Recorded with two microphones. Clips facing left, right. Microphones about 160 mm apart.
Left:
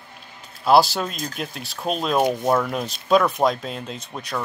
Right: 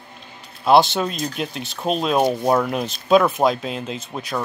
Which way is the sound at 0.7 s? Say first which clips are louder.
Right 1 dB; centre (ahead or behind).